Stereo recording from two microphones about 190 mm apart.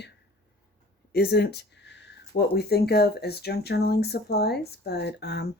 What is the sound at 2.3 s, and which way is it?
Speech, 45° left (ahead or behind).